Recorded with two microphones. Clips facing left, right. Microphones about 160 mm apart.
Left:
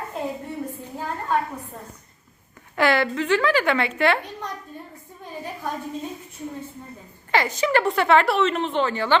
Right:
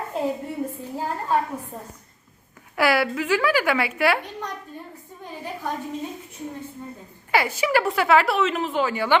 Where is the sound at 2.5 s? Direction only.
5° right (ahead or behind).